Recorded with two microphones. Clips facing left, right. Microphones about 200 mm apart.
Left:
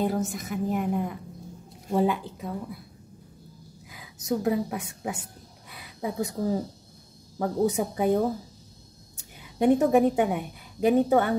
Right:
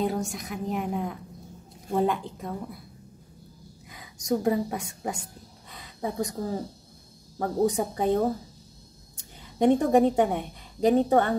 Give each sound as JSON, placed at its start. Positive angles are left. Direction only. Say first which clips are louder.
{"t": 0.0, "sound": "a woman's voice", "louder": "left 1 dB", "side_deg": 0}
{"t": 3.9, "sound": "a woman's voice", "louder": "right 1 dB", "side_deg": 5}
{"t": 5.7, "sound": "a sound", "louder": "even", "side_deg": 10}
{"t": 7.3, "sound": "a woman's voice", "louder": "even", "side_deg": 5}